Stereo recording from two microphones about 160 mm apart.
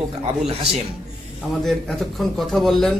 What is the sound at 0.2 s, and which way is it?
Speech, 40° right (ahead or behind).